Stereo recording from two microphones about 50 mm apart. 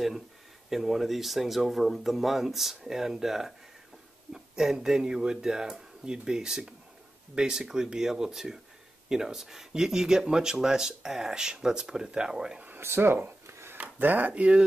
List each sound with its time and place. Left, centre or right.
0.7 s speech: centre
12.6 s speech: right
13.5 s a sound: right
13.7 s speech: right